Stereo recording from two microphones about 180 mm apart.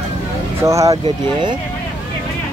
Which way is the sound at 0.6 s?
15° right (ahead or behind).